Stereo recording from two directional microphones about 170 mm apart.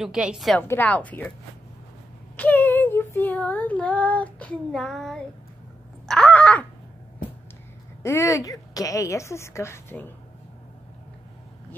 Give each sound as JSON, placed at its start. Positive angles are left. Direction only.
{"t": 0.0, "sound": "a woman's voice", "side_deg": -5}
{"t": 0.6, "sound": "a woman's voice", "side_deg": 10}
{"t": 2.3, "sound": "speech", "side_deg": 10}
{"t": 6.0, "sound": "a sound", "side_deg": 5}
{"t": 8.0, "sound": "a woman's voice", "side_deg": 15}